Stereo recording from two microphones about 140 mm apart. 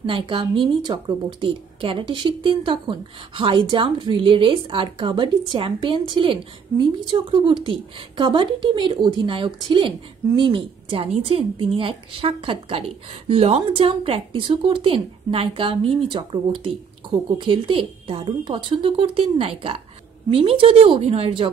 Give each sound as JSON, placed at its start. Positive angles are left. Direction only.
{"t": 0.0, "sound": "a woman's voice", "side_deg": -35}